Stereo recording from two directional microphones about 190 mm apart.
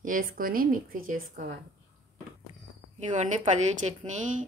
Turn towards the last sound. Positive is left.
turn(degrees=-40)  # may be behind; listen again after turning